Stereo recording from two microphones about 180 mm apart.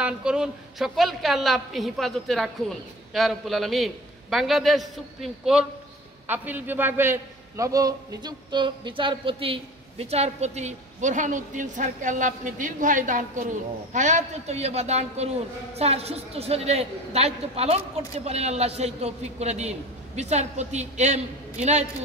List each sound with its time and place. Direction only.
0.0 s a man's voice: 5° right (ahead or behind); by 21.8 s 40° right (ahead or behind)